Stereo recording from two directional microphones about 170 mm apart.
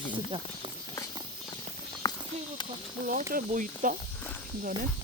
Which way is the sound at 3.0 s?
55° right (ahead or behind).